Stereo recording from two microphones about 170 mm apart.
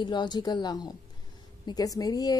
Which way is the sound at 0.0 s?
25° left (ahead or behind).